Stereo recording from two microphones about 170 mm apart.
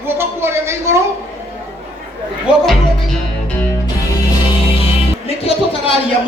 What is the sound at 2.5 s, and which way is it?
Speech, 5° right (ahead or behind).